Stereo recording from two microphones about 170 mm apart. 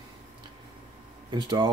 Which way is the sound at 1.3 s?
25° right (ahead or behind).